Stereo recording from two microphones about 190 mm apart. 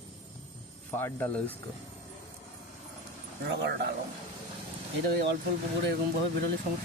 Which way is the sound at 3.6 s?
60° right (ahead or behind).